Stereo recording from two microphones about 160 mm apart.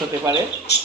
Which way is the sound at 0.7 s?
90° left.